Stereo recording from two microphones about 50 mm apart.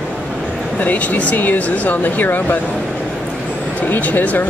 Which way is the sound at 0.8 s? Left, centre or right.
Left.